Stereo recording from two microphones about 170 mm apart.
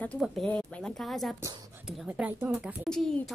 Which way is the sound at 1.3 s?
20° right (ahead or behind).